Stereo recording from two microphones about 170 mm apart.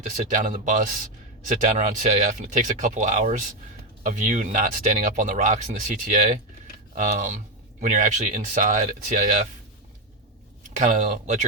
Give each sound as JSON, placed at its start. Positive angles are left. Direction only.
{"t": 0.0, "sound": "speech", "side_deg": -50}
{"t": 10.8, "sound": "speech", "side_deg": -45}